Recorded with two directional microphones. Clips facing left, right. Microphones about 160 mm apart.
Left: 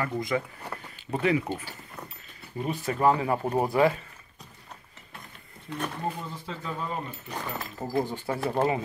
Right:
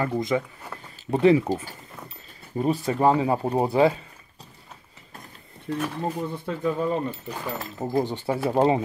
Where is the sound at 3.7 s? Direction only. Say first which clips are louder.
Right 4 dB; 25° right (ahead or behind).